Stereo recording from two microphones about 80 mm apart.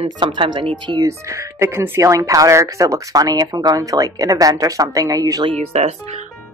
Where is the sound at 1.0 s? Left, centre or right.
Right.